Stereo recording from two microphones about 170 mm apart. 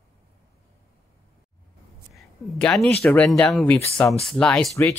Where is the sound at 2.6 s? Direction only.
5° left (ahead or behind).